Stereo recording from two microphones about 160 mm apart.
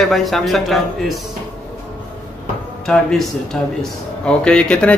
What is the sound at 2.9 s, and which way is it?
A man's voice, 5° left (ahead or behind).